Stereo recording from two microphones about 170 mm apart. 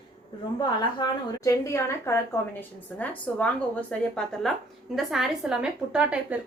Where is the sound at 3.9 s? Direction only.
5° left (ahead or behind).